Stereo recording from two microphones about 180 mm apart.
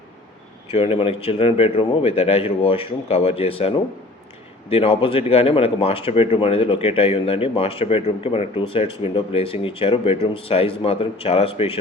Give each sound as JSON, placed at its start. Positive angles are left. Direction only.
{"t": 0.7, "sound": "speech", "side_deg": 35}